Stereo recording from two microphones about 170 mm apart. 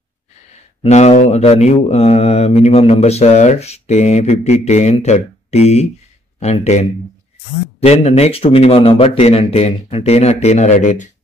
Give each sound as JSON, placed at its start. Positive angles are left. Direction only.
{"t": 0.8, "sound": "mantra", "side_deg": 40}